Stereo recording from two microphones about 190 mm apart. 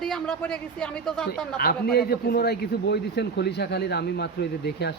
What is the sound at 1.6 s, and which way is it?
A man's voice, 55° left (ahead or behind).